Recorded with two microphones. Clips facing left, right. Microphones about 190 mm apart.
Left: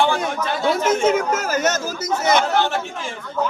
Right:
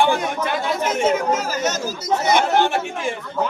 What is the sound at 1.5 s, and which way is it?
Speech, 50° left (ahead or behind).